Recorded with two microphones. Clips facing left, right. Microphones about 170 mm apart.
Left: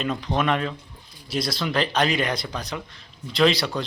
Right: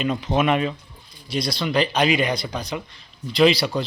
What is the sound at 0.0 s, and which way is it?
Speech, 5° right (ahead or behind).